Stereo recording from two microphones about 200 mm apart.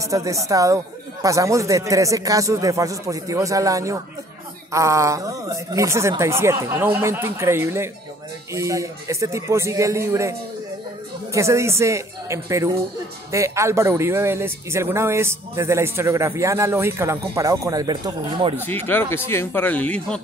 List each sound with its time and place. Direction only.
0.1 s a man's voice: 15° right (ahead or behind)
11.3 s a man's voice: 15° right (ahead or behind)
18.7 s speech: 10° left (ahead or behind)